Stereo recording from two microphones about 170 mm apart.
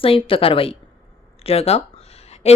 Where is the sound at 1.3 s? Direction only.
35° left (ahead or behind).